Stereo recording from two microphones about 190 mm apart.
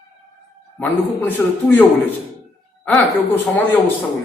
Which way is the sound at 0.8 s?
10° left (ahead or behind).